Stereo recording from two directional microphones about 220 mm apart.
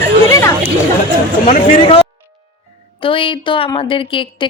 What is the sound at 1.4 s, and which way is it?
A woman's voice, 30° left (ahead or behind).